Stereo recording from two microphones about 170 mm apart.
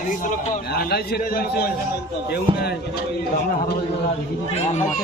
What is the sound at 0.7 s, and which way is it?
A man's voice, 70° left (ahead or behind).